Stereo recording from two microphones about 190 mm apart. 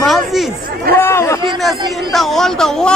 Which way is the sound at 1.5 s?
Centre (ahead or behind).